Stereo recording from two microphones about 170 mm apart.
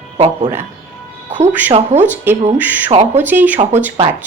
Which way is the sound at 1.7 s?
40° right (ahead or behind).